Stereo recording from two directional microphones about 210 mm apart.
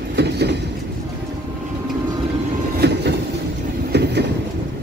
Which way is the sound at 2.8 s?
55° right (ahead or behind).